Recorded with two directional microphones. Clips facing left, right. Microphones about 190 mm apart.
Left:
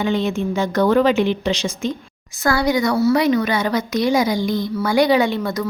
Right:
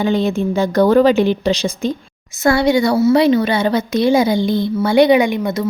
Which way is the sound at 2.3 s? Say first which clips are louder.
Right 5 dB; 25° right (ahead or behind).